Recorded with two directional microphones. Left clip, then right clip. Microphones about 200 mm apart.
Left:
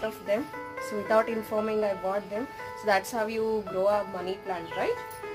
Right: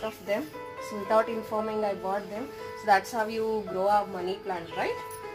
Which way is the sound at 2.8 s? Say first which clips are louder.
Right 2 dB; 25° left (ahead or behind).